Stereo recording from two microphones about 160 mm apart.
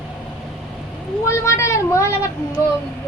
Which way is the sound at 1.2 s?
20° left (ahead or behind).